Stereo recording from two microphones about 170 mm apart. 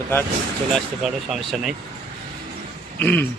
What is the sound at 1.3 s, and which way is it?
Speech, 5° right (ahead or behind).